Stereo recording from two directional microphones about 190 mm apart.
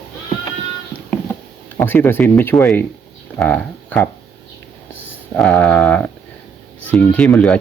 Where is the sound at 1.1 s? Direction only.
10° left (ahead or behind).